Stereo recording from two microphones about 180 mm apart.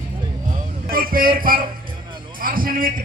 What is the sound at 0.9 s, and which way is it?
Music, 55° right (ahead or behind).